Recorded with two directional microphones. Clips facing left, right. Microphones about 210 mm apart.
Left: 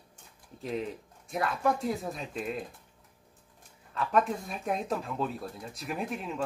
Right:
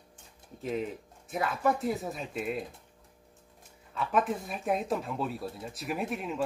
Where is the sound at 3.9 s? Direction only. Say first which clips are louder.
Left 1 dB; 5° right (ahead or behind).